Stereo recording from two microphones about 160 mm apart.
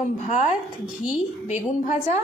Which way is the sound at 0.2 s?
50° left (ahead or behind).